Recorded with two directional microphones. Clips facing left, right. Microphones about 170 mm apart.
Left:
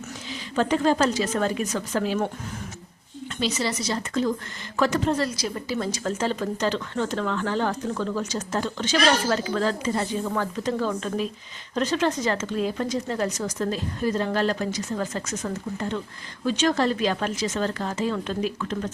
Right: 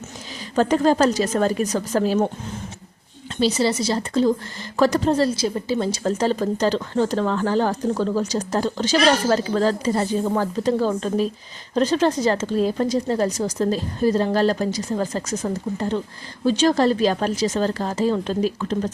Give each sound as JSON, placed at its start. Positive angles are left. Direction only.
{"t": 0.5, "sound": "a woman's voice", "side_deg": -40}
{"t": 3.4, "sound": "a woman's voice", "side_deg": -30}